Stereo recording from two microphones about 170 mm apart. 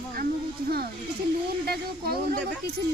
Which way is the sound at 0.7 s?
65° right (ahead or behind).